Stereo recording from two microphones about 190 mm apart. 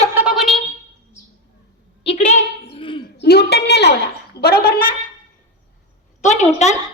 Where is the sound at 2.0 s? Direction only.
30° left (ahead or behind).